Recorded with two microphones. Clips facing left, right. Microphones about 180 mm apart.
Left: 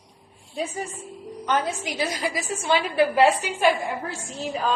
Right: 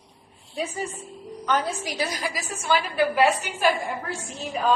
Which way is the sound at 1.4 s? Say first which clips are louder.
Even; 25° left (ahead or behind).